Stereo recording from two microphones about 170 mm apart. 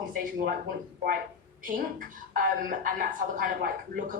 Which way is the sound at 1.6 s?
55° right (ahead or behind).